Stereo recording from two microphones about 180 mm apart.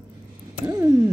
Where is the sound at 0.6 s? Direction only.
15° right (ahead or behind).